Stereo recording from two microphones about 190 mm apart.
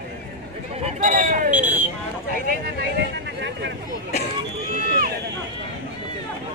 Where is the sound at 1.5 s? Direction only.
10° right (ahead or behind).